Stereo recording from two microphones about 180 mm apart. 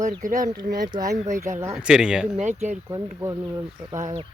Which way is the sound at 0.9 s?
20° right (ahead or behind).